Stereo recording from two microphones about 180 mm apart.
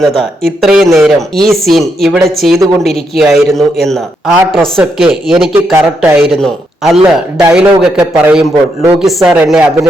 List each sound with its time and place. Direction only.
0.0 s a man's voice: centre (ahead or behind)
1.5 s a man's voice: centre (ahead or behind)
7.0 s a man's voice: 20° right (ahead or behind)
7.5 s a man's voice: 5° right (ahead or behind)